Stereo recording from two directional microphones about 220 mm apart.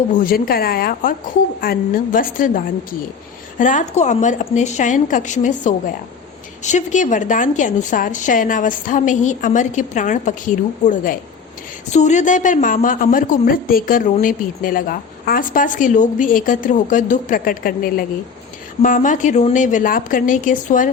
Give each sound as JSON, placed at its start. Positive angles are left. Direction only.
{"t": 0.1, "sound": "a woman's voice", "side_deg": 40}
{"t": 3.6, "sound": "a woman's voice", "side_deg": 35}